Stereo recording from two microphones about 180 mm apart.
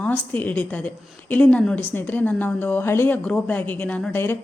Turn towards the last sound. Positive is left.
turn(degrees=10)  # may be behind; listen again after turning